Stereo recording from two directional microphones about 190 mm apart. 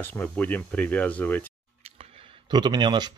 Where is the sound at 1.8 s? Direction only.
35° right (ahead or behind).